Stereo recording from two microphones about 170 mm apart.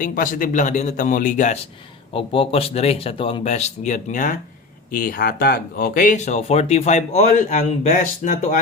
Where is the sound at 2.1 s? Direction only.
35° left (ahead or behind).